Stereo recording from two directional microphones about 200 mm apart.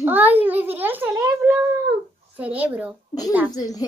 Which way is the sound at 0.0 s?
10° right (ahead or behind).